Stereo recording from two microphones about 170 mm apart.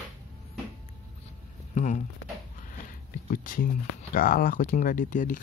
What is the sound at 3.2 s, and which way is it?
Speech, 55° left (ahead or behind).